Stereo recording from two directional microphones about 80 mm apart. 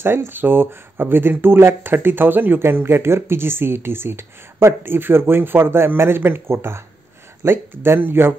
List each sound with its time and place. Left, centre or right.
0.0 s speech: right